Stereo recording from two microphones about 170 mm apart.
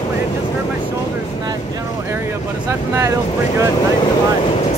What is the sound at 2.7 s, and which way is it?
Speech, 15° right (ahead or behind).